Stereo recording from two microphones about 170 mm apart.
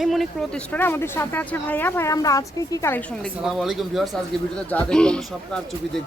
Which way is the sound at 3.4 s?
Centre (ahead or behind).